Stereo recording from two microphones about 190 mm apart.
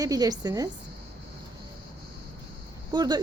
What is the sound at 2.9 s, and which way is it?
Speech, 20° right (ahead or behind).